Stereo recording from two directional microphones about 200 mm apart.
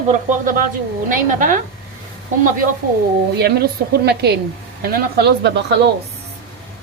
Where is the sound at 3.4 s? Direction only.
55° right (ahead or behind).